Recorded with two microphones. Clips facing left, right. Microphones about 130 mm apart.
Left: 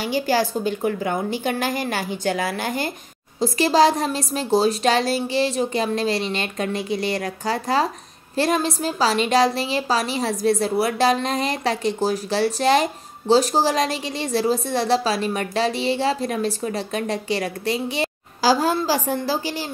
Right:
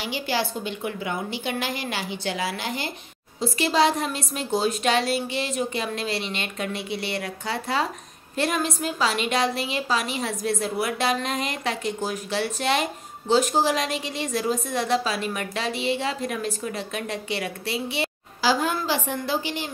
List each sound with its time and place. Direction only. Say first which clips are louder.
0.0 s a woman's voice: left 6 dB; 45° left (ahead or behind)